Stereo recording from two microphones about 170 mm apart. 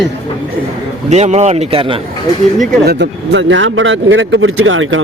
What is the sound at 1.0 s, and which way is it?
Speech, 40° right (ahead or behind).